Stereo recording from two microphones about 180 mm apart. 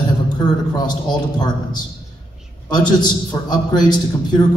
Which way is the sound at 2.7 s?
25° left (ahead or behind).